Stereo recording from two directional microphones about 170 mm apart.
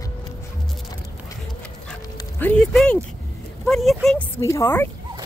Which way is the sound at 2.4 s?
5° left (ahead or behind).